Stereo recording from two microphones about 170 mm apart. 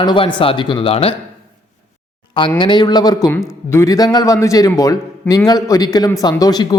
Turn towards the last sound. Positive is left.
turn(degrees=20)  # may be behind; listen again after turning